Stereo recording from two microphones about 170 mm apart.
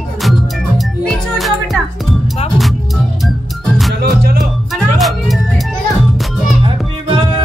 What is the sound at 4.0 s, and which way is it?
Music, 65° right (ahead or behind).